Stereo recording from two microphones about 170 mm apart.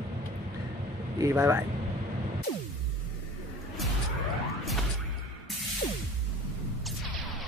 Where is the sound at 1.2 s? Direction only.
15° right (ahead or behind).